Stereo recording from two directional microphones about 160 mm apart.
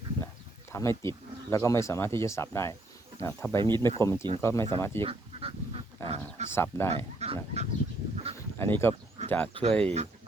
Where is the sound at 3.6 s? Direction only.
30° right (ahead or behind).